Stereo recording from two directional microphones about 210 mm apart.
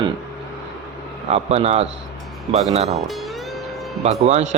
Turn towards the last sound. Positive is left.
turn(degrees=-35)  # may be behind; listen again after turning